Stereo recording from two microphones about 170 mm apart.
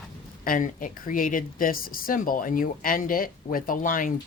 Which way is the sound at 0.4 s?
50° left (ahead or behind).